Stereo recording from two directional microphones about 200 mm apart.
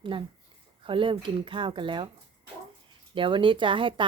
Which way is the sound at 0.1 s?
25° right (ahead or behind).